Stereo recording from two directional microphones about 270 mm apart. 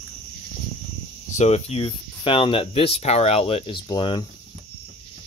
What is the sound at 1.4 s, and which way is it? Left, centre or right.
Speech, left.